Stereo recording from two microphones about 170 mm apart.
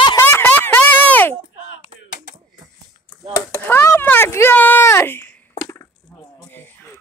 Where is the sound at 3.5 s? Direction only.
15° left (ahead or behind).